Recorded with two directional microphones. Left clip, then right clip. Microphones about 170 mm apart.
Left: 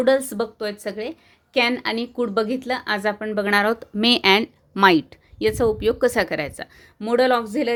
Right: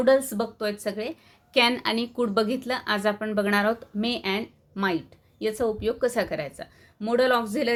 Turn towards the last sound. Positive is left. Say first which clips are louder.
# left 3 dB
turn(degrees=20)  # may be behind; listen again after turning